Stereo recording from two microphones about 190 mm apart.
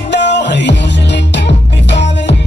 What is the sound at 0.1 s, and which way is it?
Music, 65° left (ahead or behind).